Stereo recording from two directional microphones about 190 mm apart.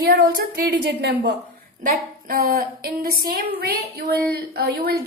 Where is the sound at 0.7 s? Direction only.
65° right (ahead or behind).